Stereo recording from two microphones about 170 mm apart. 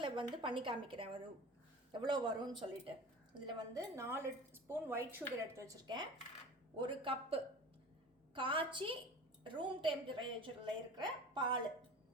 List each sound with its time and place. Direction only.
0.0 s a woman's voice: 30° right (ahead or behind)
3.9 s a woman's voice: 15° right (ahead or behind)